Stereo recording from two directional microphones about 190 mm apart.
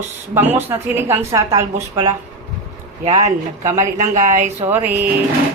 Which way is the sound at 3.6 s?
15° right (ahead or behind).